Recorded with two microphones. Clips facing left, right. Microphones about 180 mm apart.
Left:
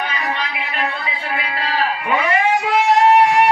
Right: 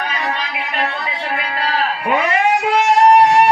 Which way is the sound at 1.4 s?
40° right (ahead or behind).